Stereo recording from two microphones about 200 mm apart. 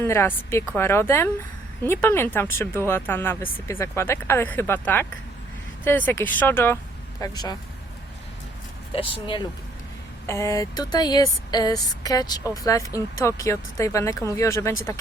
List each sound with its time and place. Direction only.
0.0 s speech: 10° left (ahead or behind)
9.0 s speech: 25° left (ahead or behind)